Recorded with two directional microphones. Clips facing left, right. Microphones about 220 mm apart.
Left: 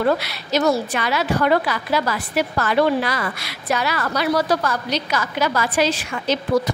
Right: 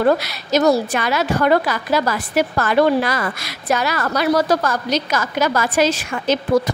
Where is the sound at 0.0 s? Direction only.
45° right (ahead or behind).